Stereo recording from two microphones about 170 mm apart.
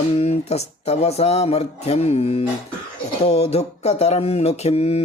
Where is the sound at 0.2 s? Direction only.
35° left (ahead or behind).